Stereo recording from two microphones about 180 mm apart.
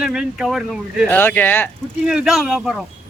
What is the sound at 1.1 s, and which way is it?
Speech, 10° left (ahead or behind).